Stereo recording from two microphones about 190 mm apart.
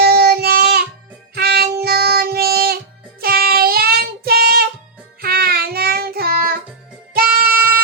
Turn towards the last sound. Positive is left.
turn(degrees=-50)  # may be behind; listen again after turning